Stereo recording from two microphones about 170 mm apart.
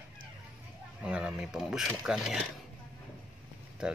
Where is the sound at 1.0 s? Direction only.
5° right (ahead or behind).